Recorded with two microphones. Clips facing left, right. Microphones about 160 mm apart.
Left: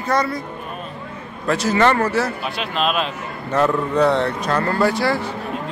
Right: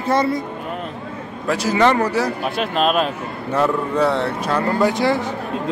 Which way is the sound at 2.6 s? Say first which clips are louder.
Right 3 dB; 45° right (ahead or behind).